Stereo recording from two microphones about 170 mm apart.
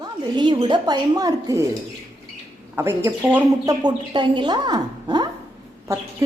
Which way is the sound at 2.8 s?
15° right (ahead or behind).